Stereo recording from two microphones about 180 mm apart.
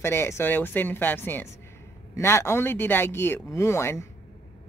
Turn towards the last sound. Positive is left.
turn(degrees=15)  # may be behind; listen again after turning